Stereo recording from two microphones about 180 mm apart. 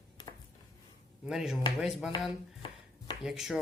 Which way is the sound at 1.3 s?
Centre (ahead or behind).